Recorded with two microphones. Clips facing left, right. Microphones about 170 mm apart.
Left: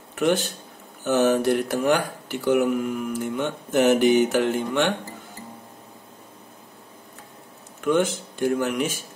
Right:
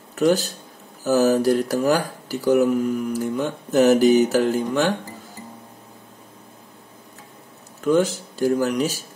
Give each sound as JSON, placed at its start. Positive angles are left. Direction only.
{"t": 0.1, "sound": "speech", "side_deg": -35}
{"t": 7.8, "sound": "speech", "side_deg": -35}